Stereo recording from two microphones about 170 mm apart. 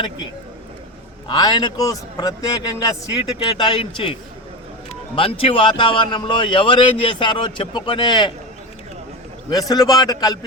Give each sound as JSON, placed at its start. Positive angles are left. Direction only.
{"t": 1.3, "sound": "a man's voice", "side_deg": 25}
{"t": 3.2, "sound": "a man's voice", "side_deg": 30}
{"t": 9.5, "sound": "a man's voice", "side_deg": 20}